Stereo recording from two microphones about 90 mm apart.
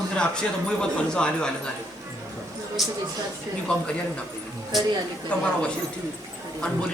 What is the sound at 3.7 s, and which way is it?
Speech, 15° left (ahead or behind).